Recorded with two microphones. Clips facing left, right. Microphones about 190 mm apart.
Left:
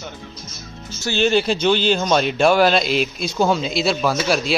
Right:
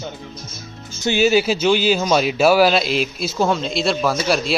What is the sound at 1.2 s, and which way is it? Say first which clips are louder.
A man's voice: right 1 dB; 5° right (ahead or behind).